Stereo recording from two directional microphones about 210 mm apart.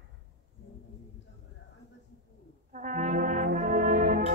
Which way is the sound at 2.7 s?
40° right (ahead or behind).